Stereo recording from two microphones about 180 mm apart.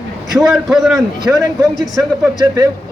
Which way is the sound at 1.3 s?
20° right (ahead or behind).